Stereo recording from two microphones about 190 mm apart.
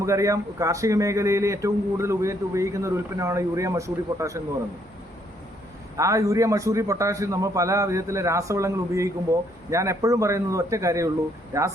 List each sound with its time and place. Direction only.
0.0 s a man's voice: 15° right (ahead or behind)
6.0 s a man's voice: 15° right (ahead or behind)